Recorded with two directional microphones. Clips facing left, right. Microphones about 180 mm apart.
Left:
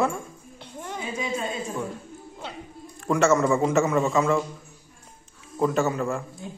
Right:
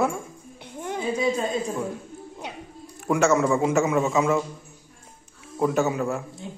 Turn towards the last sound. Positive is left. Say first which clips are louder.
# right 1 dB
turn(degrees=-5)  # may be behind; listen again after turning